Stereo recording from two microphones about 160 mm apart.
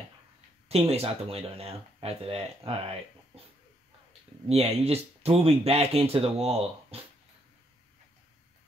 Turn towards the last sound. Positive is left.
turn(degrees=-40)  # may be behind; listen again after turning